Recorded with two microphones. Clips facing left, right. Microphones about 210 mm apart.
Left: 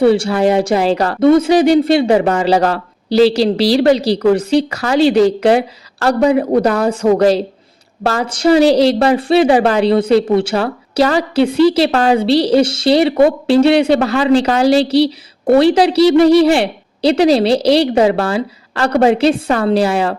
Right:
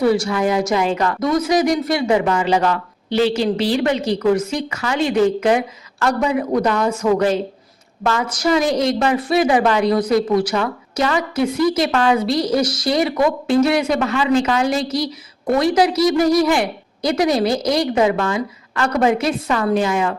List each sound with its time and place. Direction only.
0.0 s a woman's voice: 30° left (ahead or behind)